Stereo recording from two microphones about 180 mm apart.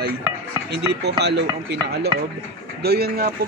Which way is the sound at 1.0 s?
70° right (ahead or behind).